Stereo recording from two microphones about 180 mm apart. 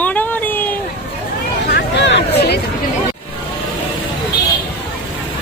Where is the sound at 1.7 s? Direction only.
75° left (ahead or behind).